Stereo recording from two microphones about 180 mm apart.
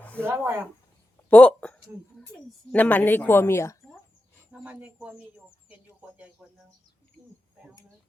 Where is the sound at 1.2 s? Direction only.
5° left (ahead or behind).